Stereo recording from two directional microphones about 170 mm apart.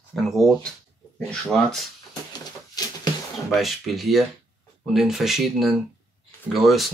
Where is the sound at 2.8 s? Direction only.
20° left (ahead or behind).